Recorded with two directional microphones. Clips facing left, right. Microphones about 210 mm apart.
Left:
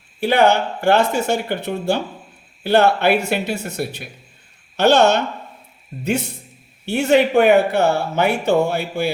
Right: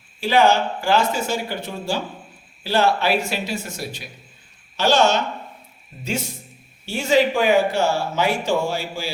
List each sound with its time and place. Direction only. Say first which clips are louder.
0.2 s speech: left 2 dB; 60° left (ahead or behind)